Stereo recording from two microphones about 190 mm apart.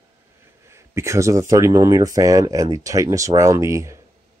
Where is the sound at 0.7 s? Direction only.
15° right (ahead or behind).